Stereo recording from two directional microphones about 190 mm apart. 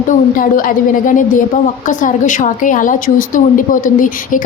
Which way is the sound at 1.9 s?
45° left (ahead or behind).